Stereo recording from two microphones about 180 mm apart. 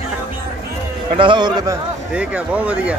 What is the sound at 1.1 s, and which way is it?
Speech, 25° right (ahead or behind).